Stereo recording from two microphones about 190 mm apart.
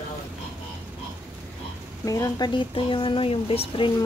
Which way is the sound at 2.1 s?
20° left (ahead or behind).